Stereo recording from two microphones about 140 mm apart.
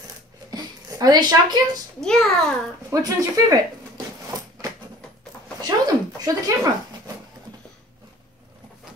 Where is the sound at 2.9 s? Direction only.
25° right (ahead or behind).